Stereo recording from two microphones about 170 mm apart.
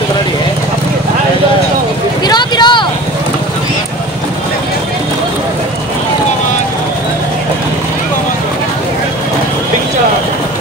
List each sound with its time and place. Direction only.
2.2 s vehicle: 25° left (ahead or behind)